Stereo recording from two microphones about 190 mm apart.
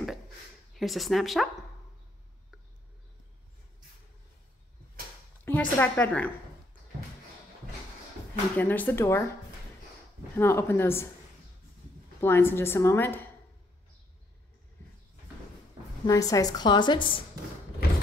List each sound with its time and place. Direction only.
0.7 s a woman's voice: centre (ahead or behind)
5.4 s a woman's voice: 10° left (ahead or behind)
8.5 s a woman's voice: 10° left (ahead or behind)
10.3 s a woman's voice: 15° left (ahead or behind)
12.2 s a woman's voice: 10° left (ahead or behind)
16.1 s a woman's voice: 20° left (ahead or behind)